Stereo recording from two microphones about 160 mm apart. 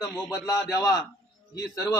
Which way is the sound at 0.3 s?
20° left (ahead or behind).